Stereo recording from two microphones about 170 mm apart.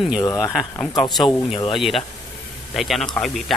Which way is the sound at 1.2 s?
Centre (ahead or behind).